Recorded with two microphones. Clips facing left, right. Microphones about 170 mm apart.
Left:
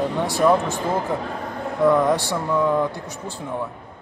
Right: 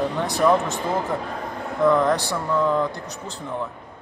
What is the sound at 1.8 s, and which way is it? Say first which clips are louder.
Speech: left 1 dB; 10° left (ahead or behind).